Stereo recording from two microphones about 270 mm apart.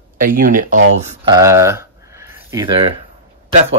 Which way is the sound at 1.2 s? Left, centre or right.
Centre.